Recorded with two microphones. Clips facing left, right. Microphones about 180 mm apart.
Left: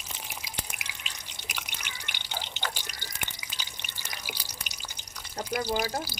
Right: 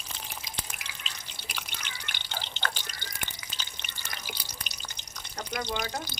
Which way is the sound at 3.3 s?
10° left (ahead or behind).